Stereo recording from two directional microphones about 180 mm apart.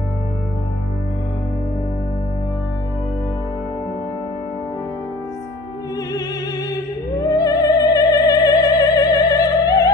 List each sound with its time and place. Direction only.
7.2 s opera: 20° left (ahead or behind)